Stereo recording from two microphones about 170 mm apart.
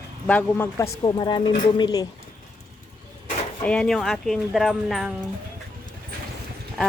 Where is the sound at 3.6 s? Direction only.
5° left (ahead or behind).